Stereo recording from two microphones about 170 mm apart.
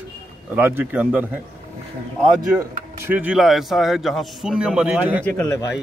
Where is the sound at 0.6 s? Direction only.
10° right (ahead or behind).